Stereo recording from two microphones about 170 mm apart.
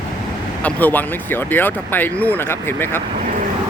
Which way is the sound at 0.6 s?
10° left (ahead or behind).